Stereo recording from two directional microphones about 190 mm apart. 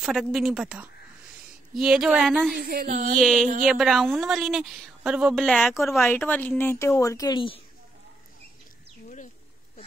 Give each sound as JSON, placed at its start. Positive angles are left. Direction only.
{"t": 0.0, "sound": "a woman's voice", "side_deg": 0}
{"t": 2.5, "sound": "speech", "side_deg": -50}
{"t": 3.2, "sound": "a woman's voice", "side_deg": 0}